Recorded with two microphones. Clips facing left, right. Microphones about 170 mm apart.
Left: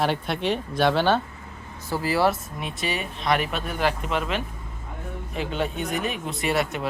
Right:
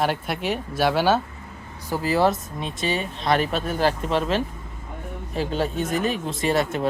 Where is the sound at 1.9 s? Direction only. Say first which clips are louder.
Right 2 dB; 20° right (ahead or behind).